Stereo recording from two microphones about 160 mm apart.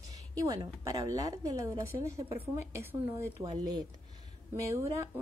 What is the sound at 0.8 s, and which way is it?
A woman's voice, 20° right (ahead or behind).